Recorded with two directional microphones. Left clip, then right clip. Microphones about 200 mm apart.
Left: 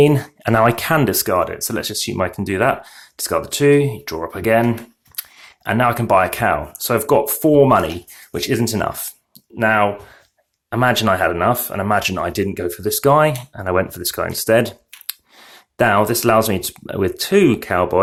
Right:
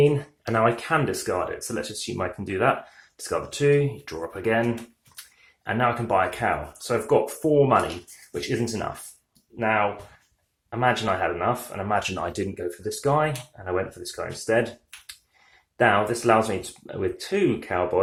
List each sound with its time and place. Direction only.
0.0 s speech: 50° left (ahead or behind)
5.6 s speech: 40° left (ahead or behind)